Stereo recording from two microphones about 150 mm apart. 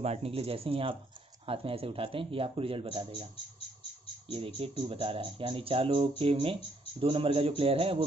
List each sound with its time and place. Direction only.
0.0 s speech: 45° right (ahead or behind)
4.3 s speech: 40° right (ahead or behind)